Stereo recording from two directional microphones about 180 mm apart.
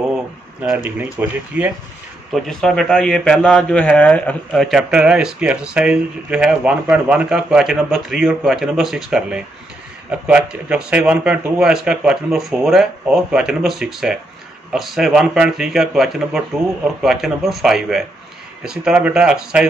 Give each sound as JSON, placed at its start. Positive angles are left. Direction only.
{"t": 0.6, "sound": "speech", "side_deg": -10}
{"t": 2.3, "sound": "a man's voice", "side_deg": 5}